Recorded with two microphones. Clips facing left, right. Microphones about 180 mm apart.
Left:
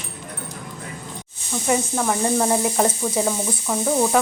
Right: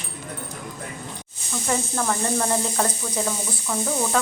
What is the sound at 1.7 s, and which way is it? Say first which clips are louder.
Speech: left 4 dB; 15° left (ahead or behind).